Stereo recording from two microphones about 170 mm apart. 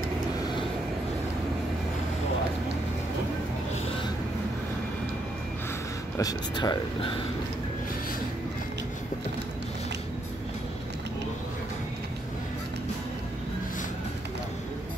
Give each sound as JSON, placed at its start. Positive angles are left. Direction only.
{"t": 6.1, "sound": "speech", "side_deg": 25}